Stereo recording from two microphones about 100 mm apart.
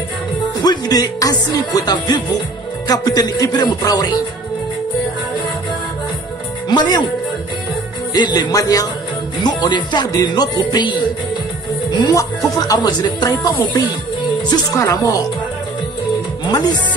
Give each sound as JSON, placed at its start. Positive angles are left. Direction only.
{"t": 0.6, "sound": "speech", "side_deg": 40}
{"t": 6.7, "sound": "speech", "side_deg": 45}
{"t": 8.1, "sound": "speech", "side_deg": 45}